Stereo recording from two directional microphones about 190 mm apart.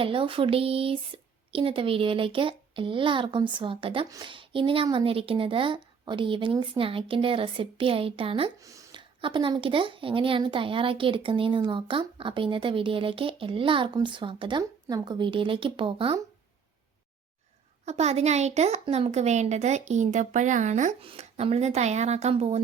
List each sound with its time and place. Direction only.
0.0 s speech: 30° right (ahead or behind)
8.6 s speech: 15° right (ahead or behind)
17.8 s a woman's voice: 35° right (ahead or behind)